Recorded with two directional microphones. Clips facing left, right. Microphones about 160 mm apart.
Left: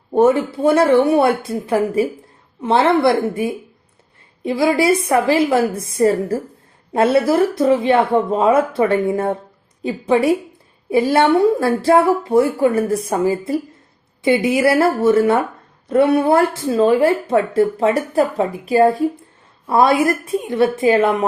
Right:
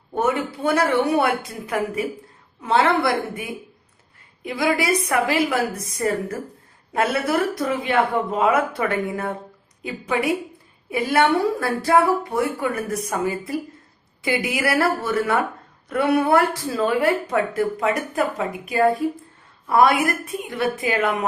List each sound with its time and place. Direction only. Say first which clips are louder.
0.1 s speech: left 8 dB; 30° left (ahead or behind)